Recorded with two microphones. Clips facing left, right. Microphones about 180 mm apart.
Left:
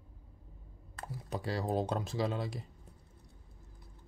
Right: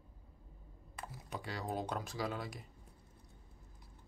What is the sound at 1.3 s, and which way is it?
Speech, 35° left (ahead or behind).